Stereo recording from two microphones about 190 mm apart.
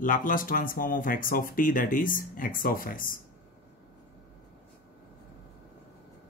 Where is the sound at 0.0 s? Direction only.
45° left (ahead or behind).